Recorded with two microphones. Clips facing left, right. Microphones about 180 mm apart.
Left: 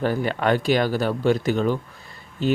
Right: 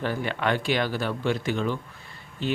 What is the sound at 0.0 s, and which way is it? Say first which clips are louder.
Speech: left 5 dB; 40° left (ahead or behind).